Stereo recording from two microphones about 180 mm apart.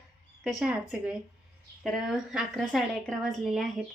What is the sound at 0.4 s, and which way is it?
Speech, 5° right (ahead or behind).